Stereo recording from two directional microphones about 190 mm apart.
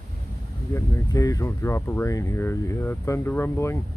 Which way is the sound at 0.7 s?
15° left (ahead or behind).